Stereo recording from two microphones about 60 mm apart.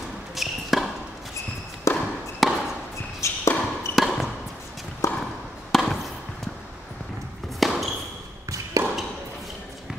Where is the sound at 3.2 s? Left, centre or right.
Left.